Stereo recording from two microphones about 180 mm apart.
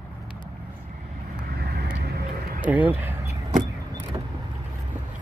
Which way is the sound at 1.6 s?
65° right (ahead or behind).